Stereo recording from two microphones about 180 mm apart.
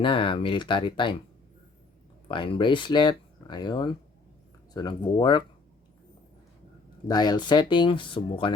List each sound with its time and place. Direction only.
0.0 s speech: 30° left (ahead or behind)
2.2 s speech: 30° left (ahead or behind)
7.1 s speech: 25° left (ahead or behind)